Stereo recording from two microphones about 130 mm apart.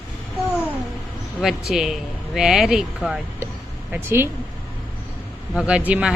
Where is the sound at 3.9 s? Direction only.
15° right (ahead or behind).